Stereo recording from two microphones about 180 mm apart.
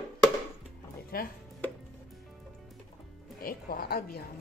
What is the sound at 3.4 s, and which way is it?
Speech, 55° left (ahead or behind).